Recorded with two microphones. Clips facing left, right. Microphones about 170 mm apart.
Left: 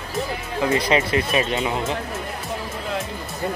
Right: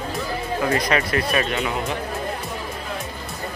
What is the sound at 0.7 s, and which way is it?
Speech, 25° left (ahead or behind).